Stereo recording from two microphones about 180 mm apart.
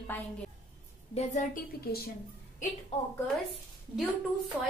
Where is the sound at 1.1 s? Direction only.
40° left (ahead or behind).